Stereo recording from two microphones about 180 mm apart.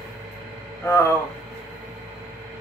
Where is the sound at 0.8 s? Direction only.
15° left (ahead or behind).